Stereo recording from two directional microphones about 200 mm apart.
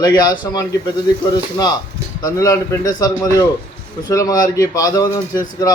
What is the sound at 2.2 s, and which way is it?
A man's voice, 15° left (ahead or behind).